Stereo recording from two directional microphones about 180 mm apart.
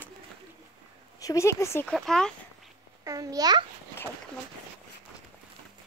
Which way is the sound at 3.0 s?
20° right (ahead or behind).